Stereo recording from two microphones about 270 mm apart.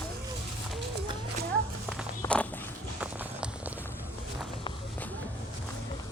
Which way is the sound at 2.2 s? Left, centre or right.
Centre.